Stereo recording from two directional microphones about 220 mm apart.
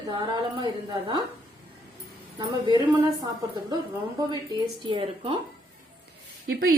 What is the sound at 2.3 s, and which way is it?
Speech, 20° right (ahead or behind).